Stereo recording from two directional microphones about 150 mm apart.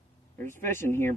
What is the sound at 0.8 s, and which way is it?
Speech, 15° left (ahead or behind).